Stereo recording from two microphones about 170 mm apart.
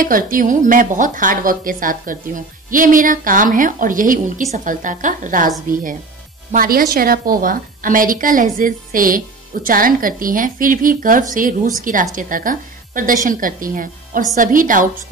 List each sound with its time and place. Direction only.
0.0 s a woman's voice: 55° right (ahead or behind)
6.5 s a woman's voice: 60° right (ahead or behind)